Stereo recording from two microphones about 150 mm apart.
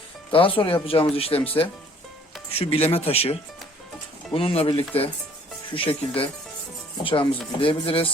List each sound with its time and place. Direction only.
0.3 s speech: 35° left (ahead or behind)